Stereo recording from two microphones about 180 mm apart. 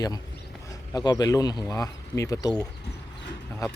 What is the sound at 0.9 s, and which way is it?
Speech, 20° left (ahead or behind).